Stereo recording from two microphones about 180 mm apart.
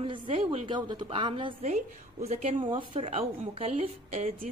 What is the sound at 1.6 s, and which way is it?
A woman's voice, 40° right (ahead or behind).